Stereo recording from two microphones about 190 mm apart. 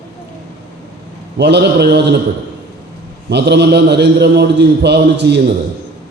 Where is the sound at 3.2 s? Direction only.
65° right (ahead or behind).